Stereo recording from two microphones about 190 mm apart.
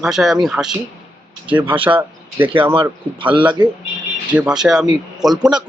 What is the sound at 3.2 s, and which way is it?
Speech, 25° right (ahead or behind).